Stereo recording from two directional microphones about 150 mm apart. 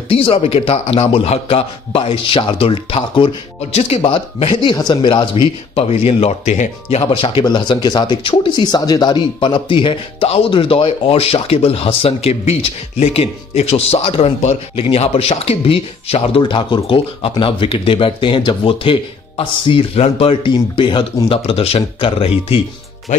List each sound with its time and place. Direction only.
0.1 s speech: 40° left (ahead or behind)